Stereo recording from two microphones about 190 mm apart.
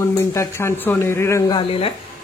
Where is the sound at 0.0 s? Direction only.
15° left (ahead or behind).